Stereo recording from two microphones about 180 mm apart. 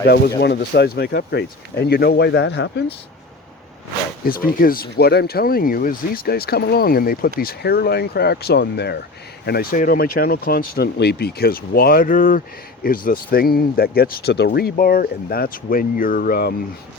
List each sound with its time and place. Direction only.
0.3 s speech: 55° left (ahead or behind)
4.3 s speech: 50° left (ahead or behind)
9.5 s speech: 50° left (ahead or behind)